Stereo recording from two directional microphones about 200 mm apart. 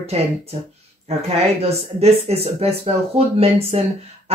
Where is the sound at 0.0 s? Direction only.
30° right (ahead or behind).